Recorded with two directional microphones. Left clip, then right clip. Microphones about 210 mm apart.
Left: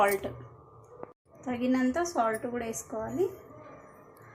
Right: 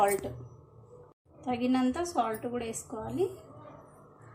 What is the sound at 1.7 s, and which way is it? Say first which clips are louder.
Speech: left 3 dB; 5° left (ahead or behind).